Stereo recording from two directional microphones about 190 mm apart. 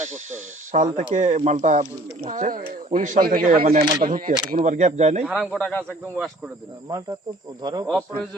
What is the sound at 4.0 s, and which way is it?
Speech, 45° right (ahead or behind).